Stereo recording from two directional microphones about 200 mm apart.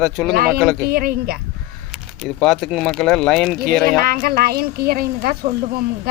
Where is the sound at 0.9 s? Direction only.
50° right (ahead or behind).